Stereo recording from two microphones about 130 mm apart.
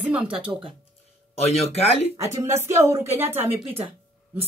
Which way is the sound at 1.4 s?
55° left (ahead or behind).